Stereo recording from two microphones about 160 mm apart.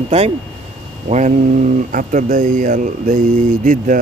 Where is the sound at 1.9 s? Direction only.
60° right (ahead or behind).